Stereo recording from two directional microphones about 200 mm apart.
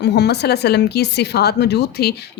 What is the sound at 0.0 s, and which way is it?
Speech, 55° left (ahead or behind).